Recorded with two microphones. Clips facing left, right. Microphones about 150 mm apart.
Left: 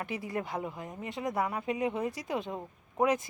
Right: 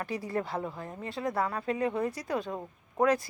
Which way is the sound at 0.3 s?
15° left (ahead or behind).